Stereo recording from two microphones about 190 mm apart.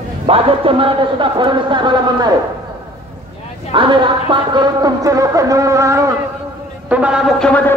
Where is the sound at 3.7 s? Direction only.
25° right (ahead or behind).